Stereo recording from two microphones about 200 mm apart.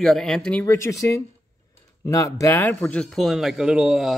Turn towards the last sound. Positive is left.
turn(degrees=-5)  # may be behind; listen again after turning